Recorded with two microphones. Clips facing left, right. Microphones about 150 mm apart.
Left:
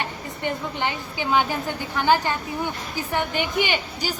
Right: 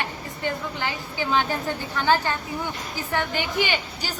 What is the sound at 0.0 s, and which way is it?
A woman's voice, 20° left (ahead or behind).